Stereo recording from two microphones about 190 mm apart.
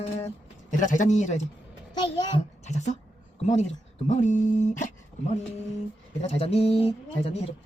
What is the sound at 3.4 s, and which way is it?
Speech, 35° left (ahead or behind).